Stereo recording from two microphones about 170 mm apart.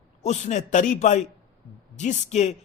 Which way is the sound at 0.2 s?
40° left (ahead or behind).